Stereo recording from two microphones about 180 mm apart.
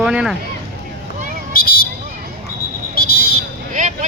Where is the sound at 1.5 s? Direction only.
55° left (ahead or behind).